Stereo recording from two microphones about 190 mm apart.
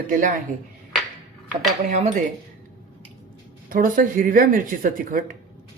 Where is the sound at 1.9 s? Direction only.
40° right (ahead or behind).